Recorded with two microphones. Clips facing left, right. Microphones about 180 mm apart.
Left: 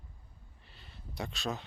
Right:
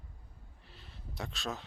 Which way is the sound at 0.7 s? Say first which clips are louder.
Right 1 dB; centre (ahead or behind).